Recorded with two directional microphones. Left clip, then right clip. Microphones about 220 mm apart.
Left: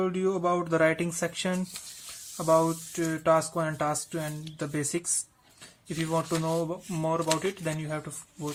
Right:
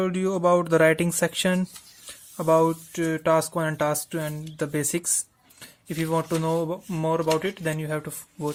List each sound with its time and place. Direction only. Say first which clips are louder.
0.0 s speech: right 4 dB; 45° right (ahead or behind)
6.1 s speech: right 4 dB; 35° right (ahead or behind)